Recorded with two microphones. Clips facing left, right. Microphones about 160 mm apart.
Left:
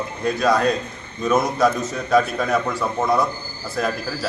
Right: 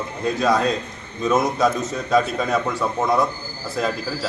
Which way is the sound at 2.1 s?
Centre (ahead or behind).